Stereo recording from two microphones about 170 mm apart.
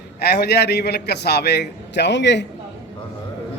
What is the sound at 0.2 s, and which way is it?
A man's voice, 75° left (ahead or behind).